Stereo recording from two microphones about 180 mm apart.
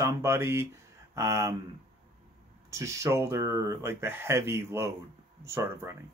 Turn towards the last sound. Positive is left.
turn(degrees=-15)  # may be behind; listen again after turning